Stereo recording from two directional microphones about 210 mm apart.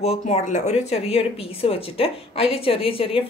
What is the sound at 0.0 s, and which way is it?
Speech, 30° left (ahead or behind).